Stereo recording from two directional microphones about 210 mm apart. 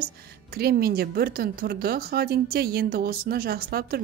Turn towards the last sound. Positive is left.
turn(degrees=-45)  # may be behind; listen again after turning